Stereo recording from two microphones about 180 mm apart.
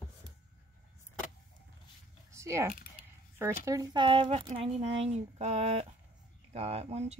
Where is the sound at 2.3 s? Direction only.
15° right (ahead or behind).